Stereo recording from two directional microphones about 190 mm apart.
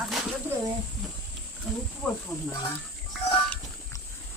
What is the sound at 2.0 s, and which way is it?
Speech, 5° left (ahead or behind).